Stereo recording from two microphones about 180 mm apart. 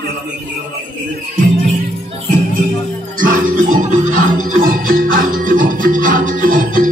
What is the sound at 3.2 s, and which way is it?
Music, 45° right (ahead or behind).